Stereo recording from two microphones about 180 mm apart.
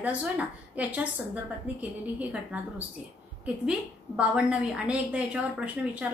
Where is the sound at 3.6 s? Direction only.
5° right (ahead or behind).